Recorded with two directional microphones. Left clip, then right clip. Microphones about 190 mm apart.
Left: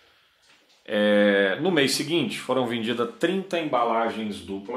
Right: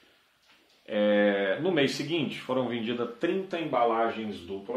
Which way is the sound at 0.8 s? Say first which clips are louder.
Left 4 dB; 40° left (ahead or behind).